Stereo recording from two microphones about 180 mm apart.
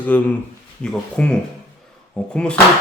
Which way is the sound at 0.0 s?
10° left (ahead or behind).